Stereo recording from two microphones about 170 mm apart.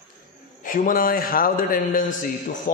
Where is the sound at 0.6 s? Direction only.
55° left (ahead or behind).